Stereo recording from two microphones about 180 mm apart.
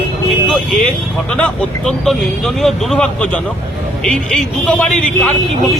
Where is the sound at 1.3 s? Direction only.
5° left (ahead or behind).